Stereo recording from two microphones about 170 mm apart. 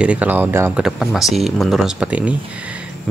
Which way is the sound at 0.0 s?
10° right (ahead or behind).